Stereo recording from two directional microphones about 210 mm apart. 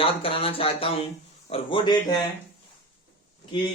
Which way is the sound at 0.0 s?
25° left (ahead or behind).